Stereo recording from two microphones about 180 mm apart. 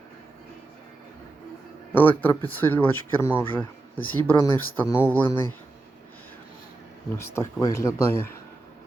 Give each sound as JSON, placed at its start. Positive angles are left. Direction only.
{"t": 1.9, "sound": "speech", "side_deg": 10}
{"t": 7.2, "sound": "speech", "side_deg": 15}